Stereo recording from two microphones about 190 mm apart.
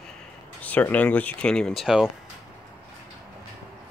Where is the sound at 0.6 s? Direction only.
10° left (ahead or behind).